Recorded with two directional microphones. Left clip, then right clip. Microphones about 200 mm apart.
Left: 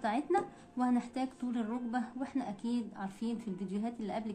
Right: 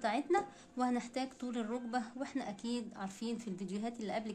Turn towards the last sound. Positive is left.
turn(degrees=-40)  # may be behind; listen again after turning